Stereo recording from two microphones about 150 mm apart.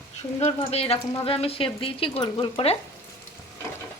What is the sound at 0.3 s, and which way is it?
Frying, 45° left (ahead or behind).